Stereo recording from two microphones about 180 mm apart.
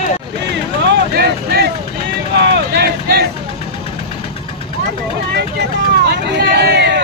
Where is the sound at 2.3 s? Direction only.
65° right (ahead or behind).